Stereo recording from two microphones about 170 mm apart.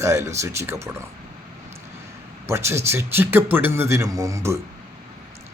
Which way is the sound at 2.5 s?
15° right (ahead or behind).